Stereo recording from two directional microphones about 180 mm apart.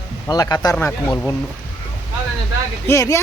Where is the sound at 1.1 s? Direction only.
10° left (ahead or behind).